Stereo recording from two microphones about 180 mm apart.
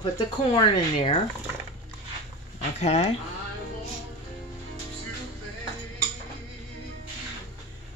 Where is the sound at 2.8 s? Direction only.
35° left (ahead or behind).